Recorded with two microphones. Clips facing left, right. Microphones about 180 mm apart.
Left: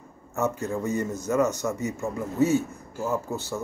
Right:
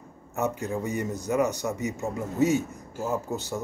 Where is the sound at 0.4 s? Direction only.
15° right (ahead or behind).